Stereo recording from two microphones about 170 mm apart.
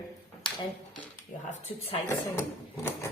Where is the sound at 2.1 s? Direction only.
15° left (ahead or behind).